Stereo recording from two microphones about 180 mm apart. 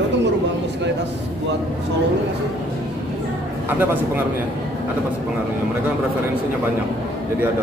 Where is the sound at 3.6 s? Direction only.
10° right (ahead or behind).